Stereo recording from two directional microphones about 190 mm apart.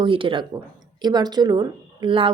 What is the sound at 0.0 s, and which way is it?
Speech, 25° right (ahead or behind).